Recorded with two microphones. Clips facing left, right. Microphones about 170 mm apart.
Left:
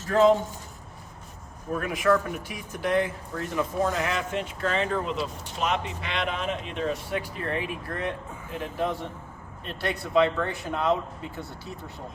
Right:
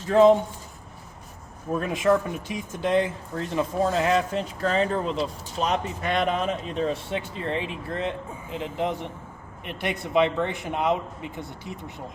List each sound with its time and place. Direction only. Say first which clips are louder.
0.1 s speech: right 3 dB; 20° right (ahead or behind)
1.7 s speech: right 2 dB; 25° right (ahead or behind)